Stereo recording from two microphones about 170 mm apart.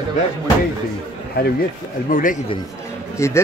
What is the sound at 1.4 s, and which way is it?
Speech, 65° left (ahead or behind).